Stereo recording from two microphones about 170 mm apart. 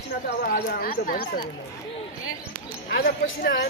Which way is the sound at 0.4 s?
60° left (ahead or behind).